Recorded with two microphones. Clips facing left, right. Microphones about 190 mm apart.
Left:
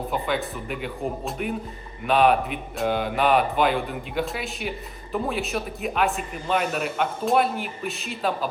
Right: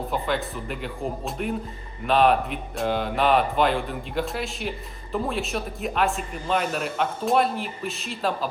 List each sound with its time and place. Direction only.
0.1 s a man's voice: centre (ahead or behind)